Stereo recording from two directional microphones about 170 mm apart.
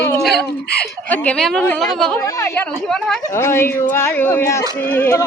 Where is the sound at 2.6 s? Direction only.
5° left (ahead or behind).